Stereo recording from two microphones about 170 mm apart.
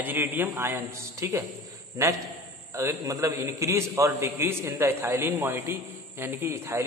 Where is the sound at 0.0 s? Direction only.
10° right (ahead or behind).